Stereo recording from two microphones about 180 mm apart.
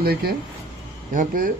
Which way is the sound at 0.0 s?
60° right (ahead or behind).